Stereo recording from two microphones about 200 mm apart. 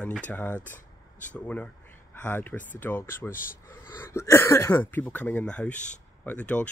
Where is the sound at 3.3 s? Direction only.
45° left (ahead or behind).